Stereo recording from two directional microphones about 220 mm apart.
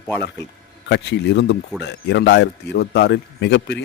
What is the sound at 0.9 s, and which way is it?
Speech, 50° left (ahead or behind).